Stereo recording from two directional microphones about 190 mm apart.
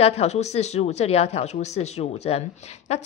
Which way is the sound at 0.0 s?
35° left (ahead or behind).